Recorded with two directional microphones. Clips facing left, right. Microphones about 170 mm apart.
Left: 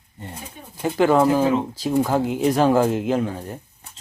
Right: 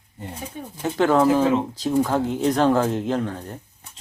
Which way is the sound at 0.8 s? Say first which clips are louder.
Left 1 dB; 5° left (ahead or behind).